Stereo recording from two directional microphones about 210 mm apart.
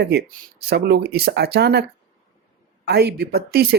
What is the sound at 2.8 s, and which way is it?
Speech, 50° right (ahead or behind).